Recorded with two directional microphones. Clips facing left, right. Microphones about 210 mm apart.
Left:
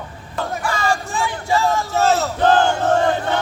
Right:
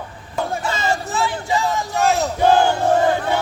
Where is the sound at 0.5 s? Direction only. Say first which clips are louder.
Left 2 dB; 20° right (ahead or behind).